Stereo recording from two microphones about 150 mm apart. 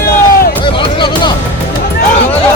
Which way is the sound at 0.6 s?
30° left (ahead or behind).